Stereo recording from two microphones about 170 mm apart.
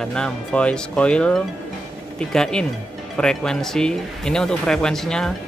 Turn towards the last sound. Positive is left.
turn(degrees=5)  # may be behind; listen again after turning